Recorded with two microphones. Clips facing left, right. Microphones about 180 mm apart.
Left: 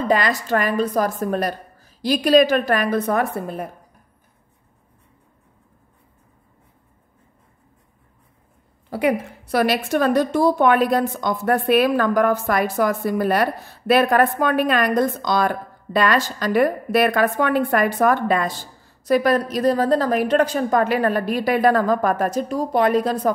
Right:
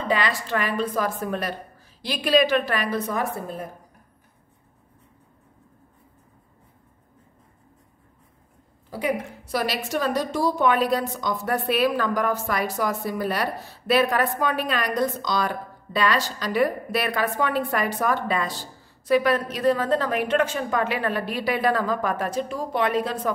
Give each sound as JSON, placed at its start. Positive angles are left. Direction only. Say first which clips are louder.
{"t": 0.1, "sound": "a woman's voice", "louder": "left 4 dB", "side_deg": 45}
{"t": 8.9, "sound": "a woman's voice", "louder": "left 6 dB", "side_deg": 65}
{"t": 19.0, "sound": "a woman's voice", "louder": "left 3 dB", "side_deg": 40}